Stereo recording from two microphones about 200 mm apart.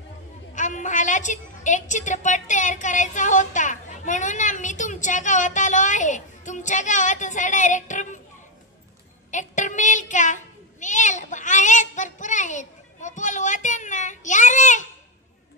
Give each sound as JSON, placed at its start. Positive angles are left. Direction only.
{"t": 0.6, "sound": "a woman's voice", "side_deg": 40}
{"t": 9.3, "sound": "a child's voice", "side_deg": 40}